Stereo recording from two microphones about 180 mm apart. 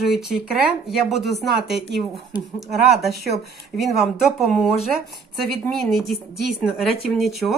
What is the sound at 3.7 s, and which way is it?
A woman's voice, centre (ahead or behind).